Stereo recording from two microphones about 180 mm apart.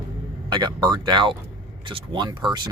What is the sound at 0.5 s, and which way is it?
Speech, 25° right (ahead or behind).